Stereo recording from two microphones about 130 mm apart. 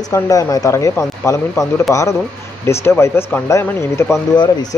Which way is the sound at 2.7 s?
20° left (ahead or behind).